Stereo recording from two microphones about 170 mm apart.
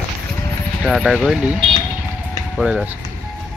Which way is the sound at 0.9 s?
Centre (ahead or behind).